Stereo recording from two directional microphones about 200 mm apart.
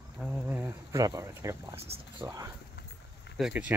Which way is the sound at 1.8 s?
30° right (ahead or behind).